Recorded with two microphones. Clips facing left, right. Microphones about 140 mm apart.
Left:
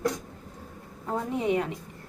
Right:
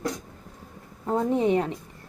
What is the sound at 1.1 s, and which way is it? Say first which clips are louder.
Speech: right 5 dB; 30° right (ahead or behind).